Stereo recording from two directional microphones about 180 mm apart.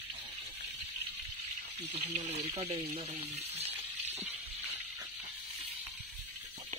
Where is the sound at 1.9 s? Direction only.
40° right (ahead or behind).